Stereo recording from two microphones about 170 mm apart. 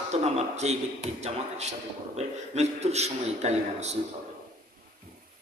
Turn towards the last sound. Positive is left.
turn(degrees=-40)  # may be behind; listen again after turning